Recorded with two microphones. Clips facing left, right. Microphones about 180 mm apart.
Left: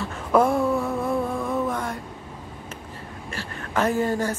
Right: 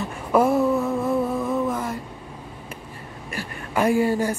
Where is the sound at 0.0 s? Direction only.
10° right (ahead or behind).